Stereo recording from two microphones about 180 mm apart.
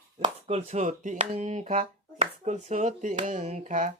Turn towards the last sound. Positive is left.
turn(degrees=-45)  # may be behind; listen again after turning